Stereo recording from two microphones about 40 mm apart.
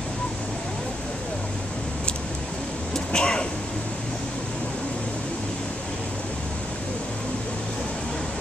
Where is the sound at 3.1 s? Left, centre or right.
Left.